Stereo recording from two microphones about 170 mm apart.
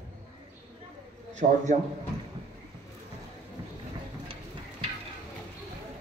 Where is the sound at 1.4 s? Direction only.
50° right (ahead or behind).